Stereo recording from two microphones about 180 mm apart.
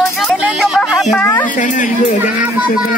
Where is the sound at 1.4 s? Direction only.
45° left (ahead or behind).